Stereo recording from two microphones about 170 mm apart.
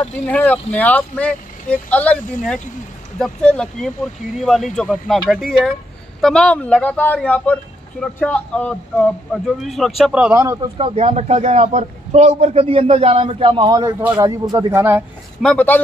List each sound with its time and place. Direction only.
0.3 s speech: 10° left (ahead or behind)
10.4 s speech: 15° right (ahead or behind)
10.8 s a man's voice: 40° right (ahead or behind); by 15.0 s 15° right (ahead or behind)
15.4 s speech: 10° left (ahead or behind)